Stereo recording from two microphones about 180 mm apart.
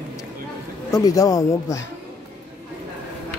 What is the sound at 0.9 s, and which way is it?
Speech, 20° left (ahead or behind).